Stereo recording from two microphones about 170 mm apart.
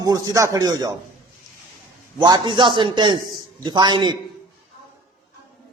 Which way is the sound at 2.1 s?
25° right (ahead or behind).